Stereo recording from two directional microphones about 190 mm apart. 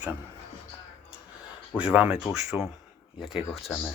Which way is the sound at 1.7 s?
5° right (ahead or behind).